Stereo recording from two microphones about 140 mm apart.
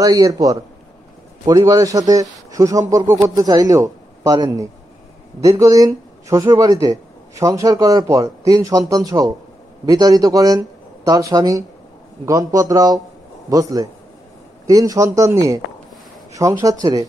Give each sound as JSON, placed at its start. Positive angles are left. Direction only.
{"t": 0.0, "sound": "speech", "side_deg": -25}